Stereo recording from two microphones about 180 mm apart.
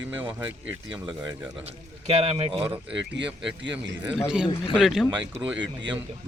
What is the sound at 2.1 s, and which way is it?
Speech, 35° right (ahead or behind).